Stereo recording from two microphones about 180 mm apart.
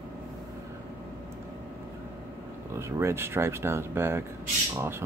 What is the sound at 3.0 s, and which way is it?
Speech, 15° right (ahead or behind).